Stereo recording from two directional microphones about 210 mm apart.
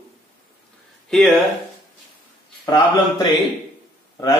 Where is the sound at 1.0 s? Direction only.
Centre (ahead or behind).